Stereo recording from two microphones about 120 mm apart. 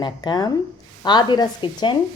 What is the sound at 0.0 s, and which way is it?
A woman's voice, 35° left (ahead or behind).